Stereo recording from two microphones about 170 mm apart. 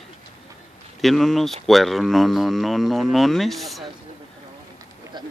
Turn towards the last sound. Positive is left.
turn(degrees=0)  # may be behind; listen again after turning